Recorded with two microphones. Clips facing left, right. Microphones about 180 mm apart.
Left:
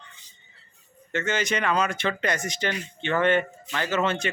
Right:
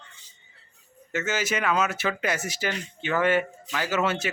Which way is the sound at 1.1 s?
5° right (ahead or behind).